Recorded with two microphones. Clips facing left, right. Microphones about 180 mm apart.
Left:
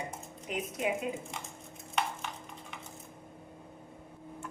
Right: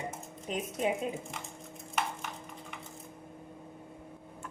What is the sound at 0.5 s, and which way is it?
Speech, 30° right (ahead or behind).